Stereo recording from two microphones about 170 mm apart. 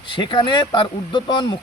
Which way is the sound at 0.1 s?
30° left (ahead or behind).